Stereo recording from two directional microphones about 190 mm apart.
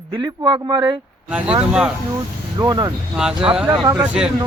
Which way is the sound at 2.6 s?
20° right (ahead or behind).